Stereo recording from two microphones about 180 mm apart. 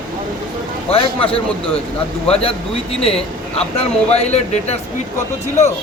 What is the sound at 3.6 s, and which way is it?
Speech, 35° left (ahead or behind).